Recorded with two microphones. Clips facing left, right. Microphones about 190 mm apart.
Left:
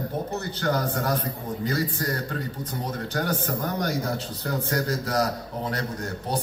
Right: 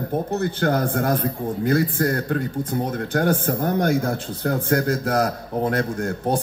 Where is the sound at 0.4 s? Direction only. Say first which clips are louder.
Right 5 dB; 55° right (ahead or behind).